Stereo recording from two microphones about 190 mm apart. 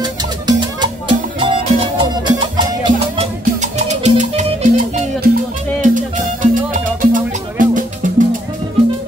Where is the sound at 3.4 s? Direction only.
40° right (ahead or behind).